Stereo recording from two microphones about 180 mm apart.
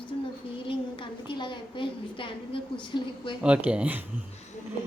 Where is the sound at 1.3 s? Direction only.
25° left (ahead or behind).